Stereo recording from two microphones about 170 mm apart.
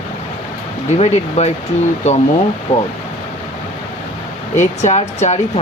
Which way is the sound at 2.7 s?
45° left (ahead or behind).